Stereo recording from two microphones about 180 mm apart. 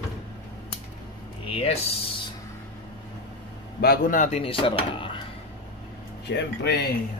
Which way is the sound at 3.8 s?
55° left (ahead or behind).